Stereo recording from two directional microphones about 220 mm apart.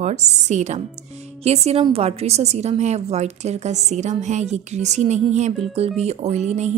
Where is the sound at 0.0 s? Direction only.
30° right (ahead or behind).